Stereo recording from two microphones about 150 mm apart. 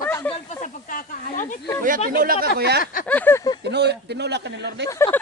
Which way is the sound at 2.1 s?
80° right.